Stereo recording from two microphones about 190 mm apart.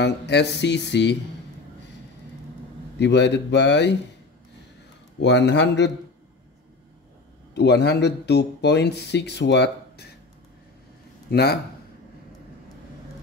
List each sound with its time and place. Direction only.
0.0 s speech: 60° left (ahead or behind)
3.0 s speech: 65° left (ahead or behind)
5.2 s speech: 65° left (ahead or behind)
7.5 s speech: 65° left (ahead or behind)
11.2 s speech: 55° left (ahead or behind)